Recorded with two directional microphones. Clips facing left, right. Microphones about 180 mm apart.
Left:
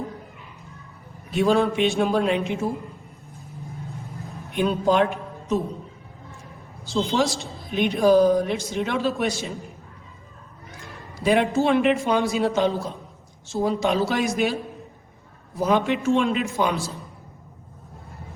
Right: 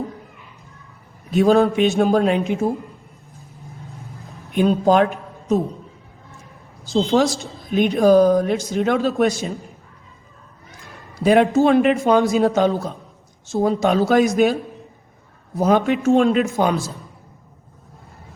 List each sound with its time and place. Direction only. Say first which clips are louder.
1.3 s a man's voice: right 5 dB; 45° right (ahead or behind)
4.5 s a man's voice: right 5 dB; 40° right (ahead or behind)
6.9 s a man's voice: right 5 dB; 45° right (ahead or behind)
11.3 s a man's voice: right 5 dB; 45° right (ahead or behind)
15.5 s a man's voice: right 4 dB; 45° right (ahead or behind)